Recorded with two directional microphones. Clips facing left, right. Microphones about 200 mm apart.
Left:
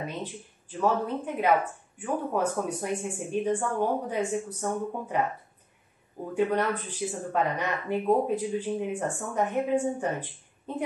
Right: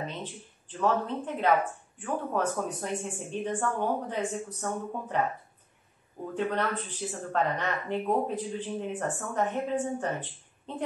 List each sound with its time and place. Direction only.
0.0 s speech: 10° left (ahead or behind)
6.3 s speech: 10° left (ahead or behind)